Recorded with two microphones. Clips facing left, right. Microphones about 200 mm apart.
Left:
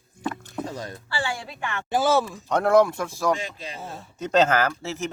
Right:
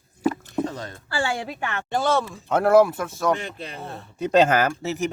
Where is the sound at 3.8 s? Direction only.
5° left (ahead or behind).